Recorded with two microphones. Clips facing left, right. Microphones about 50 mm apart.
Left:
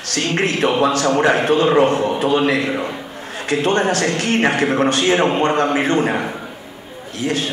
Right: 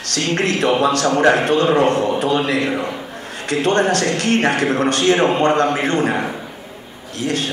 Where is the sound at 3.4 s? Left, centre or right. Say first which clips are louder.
Even; right.